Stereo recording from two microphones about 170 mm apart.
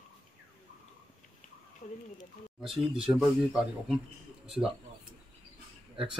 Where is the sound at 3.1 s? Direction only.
5° right (ahead or behind).